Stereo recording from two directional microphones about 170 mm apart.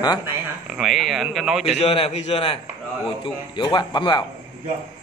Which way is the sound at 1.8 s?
35° left (ahead or behind).